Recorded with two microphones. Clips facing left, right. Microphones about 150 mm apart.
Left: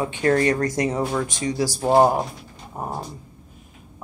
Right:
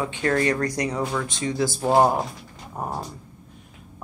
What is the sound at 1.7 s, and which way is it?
Speech, 10° left (ahead or behind).